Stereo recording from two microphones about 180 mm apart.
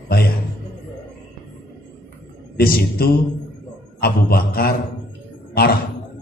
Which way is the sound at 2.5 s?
55° left (ahead or behind).